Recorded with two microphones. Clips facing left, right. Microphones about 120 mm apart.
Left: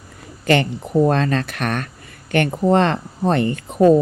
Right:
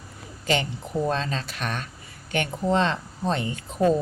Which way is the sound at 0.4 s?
60° left (ahead or behind).